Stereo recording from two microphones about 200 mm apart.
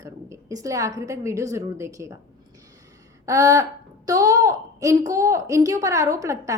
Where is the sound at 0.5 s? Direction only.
15° right (ahead or behind).